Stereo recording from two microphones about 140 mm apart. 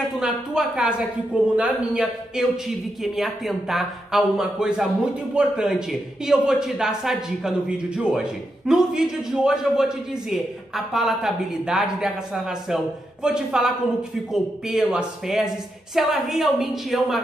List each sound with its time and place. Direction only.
0.2 s speech: 5° right (ahead or behind)